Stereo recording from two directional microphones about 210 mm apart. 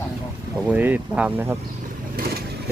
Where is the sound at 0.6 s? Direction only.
5° right (ahead or behind).